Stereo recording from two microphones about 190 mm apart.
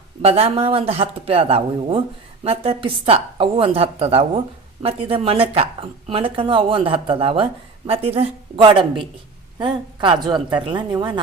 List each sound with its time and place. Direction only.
0.2 s speech: 30° right (ahead or behind)